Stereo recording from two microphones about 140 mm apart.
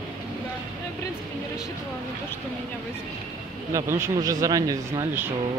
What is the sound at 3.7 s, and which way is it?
Speech, 20° right (ahead or behind).